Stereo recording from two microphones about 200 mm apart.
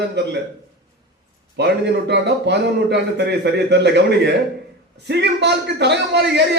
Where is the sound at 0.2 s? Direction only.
60° right (ahead or behind).